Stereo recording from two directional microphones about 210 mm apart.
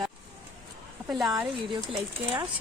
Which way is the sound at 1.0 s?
Centre (ahead or behind).